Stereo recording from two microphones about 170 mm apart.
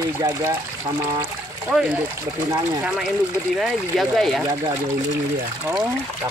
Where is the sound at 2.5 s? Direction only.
5° right (ahead or behind).